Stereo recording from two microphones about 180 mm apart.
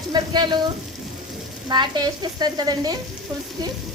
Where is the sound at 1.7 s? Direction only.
25° right (ahead or behind).